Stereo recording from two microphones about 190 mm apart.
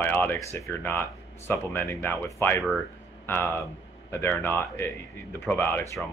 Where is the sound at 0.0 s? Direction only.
10° left (ahead or behind).